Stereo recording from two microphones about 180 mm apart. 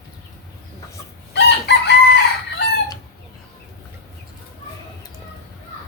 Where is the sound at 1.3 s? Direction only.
70° left (ahead or behind).